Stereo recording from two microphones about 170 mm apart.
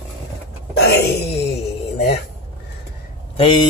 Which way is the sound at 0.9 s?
75° left (ahead or behind).